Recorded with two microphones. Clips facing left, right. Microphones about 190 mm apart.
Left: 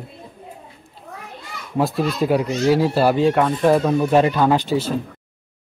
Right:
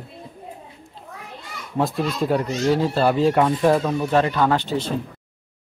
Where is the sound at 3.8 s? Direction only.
15° left (ahead or behind).